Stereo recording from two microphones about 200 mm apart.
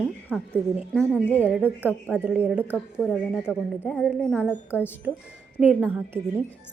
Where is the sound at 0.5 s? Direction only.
5° right (ahead or behind).